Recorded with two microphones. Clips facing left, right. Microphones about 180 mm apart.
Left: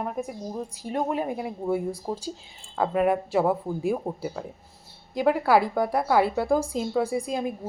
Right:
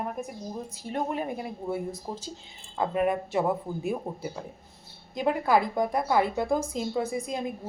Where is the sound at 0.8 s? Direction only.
15° left (ahead or behind).